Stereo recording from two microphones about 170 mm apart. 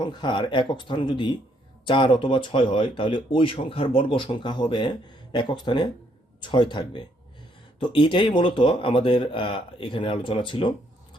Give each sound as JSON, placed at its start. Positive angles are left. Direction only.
{"t": 0.0, "sound": "speech", "side_deg": 25}